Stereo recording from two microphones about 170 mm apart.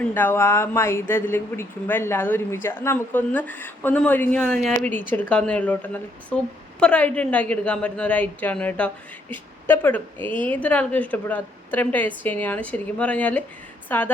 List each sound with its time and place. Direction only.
0.0 s speech: 10° left (ahead or behind)